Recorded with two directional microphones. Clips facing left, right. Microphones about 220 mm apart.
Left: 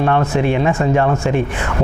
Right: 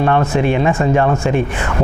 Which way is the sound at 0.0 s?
20° right (ahead or behind).